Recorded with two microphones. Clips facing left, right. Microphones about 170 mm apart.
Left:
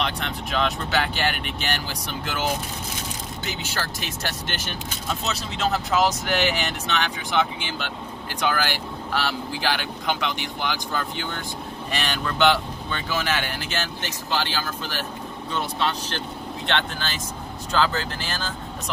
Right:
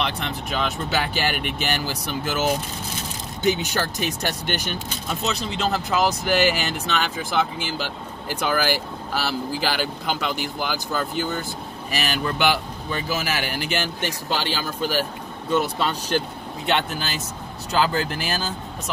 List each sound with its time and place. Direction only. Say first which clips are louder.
0.0 s speech: right 1 dB; centre (ahead or behind)
3.6 s speech: right 5 dB; 15° right (ahead or behind)
5.1 s speech: right 4 dB; centre (ahead or behind)